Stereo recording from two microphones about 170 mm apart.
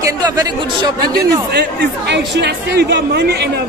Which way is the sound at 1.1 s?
70° right (ahead or behind).